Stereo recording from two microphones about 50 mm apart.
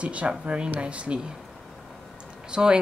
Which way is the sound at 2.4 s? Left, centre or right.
Centre.